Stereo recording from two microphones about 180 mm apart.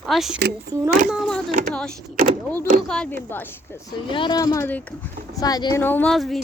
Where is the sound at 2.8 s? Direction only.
5° left (ahead or behind).